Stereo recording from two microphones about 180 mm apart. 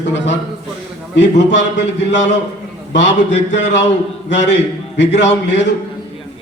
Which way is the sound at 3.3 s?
75° left (ahead or behind).